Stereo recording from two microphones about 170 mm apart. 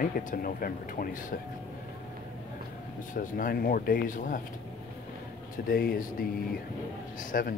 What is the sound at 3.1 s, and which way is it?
Speech, 55° left (ahead or behind).